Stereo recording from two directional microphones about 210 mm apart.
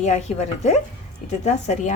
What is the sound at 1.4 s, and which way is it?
Speech, 30° left (ahead or behind).